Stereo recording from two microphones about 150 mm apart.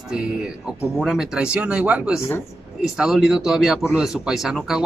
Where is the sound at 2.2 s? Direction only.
15° left (ahead or behind).